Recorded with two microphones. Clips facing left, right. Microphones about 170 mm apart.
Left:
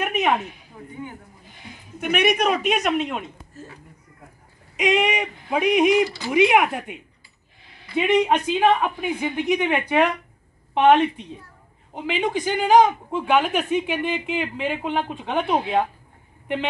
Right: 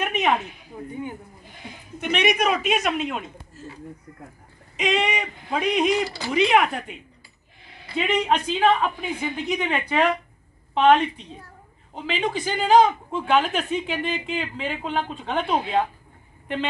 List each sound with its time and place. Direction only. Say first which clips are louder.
0.0 s a sound: left 1 dB; 5° left (ahead or behind)
2.0 s speech: left 2 dB; 5° left (ahead or behind)
2.2 s speech: left 1 dB; 5° right (ahead or behind)
4.7 s a man's voice: left 3 dB; 10° left (ahead or behind)